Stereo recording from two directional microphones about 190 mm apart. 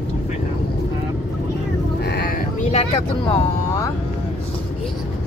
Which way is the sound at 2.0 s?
55° left (ahead or behind).